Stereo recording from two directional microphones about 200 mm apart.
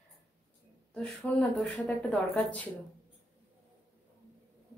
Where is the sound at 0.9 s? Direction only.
5° left (ahead or behind).